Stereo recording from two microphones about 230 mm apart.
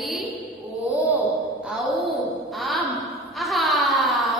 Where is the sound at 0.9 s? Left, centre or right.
Centre.